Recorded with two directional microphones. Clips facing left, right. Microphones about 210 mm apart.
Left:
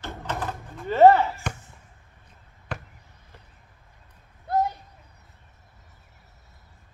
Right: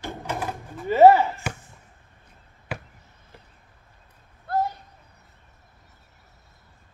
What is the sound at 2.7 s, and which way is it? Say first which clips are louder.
Basketball bounce: right 1 dB; 5° right (ahead or behind).